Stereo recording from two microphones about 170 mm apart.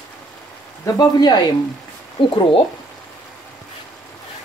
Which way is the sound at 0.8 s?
25° left (ahead or behind).